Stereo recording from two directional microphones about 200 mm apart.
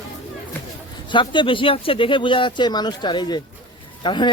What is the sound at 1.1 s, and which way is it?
Speech, 25° left (ahead or behind).